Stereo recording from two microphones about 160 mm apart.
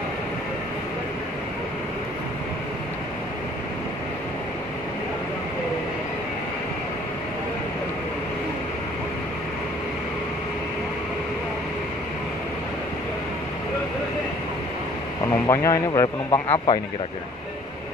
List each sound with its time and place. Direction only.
15.4 s a man's voice: 20° left (ahead or behind)